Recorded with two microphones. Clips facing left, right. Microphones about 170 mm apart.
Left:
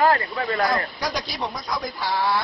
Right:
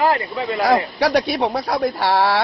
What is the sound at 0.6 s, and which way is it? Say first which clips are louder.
Speech: right 8 dB; 65° right (ahead or behind).